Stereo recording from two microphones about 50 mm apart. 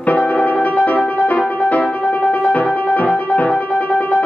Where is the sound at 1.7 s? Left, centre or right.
Left.